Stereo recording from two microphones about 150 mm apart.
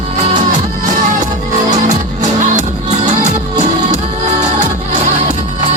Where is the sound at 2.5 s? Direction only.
55° right (ahead or behind).